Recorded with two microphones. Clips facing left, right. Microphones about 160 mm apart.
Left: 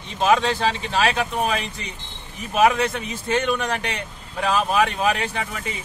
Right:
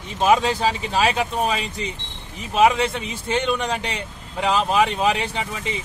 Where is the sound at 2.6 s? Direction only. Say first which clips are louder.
Right 1 dB; 25° right (ahead or behind).